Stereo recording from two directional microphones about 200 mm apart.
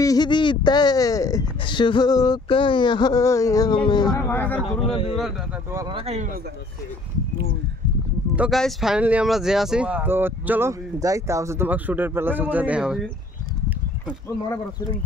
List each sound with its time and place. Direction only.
0.0 s speech: 20° left (ahead or behind)
4.3 s speech: 10° left (ahead or behind)
4.8 s speech: 25° left (ahead or behind)
5.7 s speech: 15° right (ahead or behind)
5.9 s speech: 30° right (ahead or behind)
8.4 s speech: centre (ahead or behind)